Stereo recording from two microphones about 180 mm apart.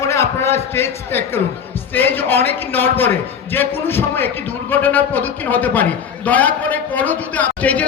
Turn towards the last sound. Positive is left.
turn(degrees=10)  # may be behind; listen again after turning